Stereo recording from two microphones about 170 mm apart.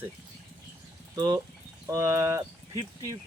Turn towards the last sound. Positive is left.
turn(degrees=-20)  # may be behind; listen again after turning